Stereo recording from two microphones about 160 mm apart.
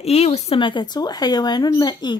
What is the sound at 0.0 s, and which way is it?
Speech, 40° left (ahead or behind).